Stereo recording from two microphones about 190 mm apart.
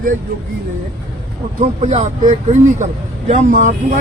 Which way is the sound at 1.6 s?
35° right (ahead or behind).